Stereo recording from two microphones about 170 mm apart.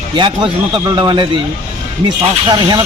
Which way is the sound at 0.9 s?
30° right (ahead or behind).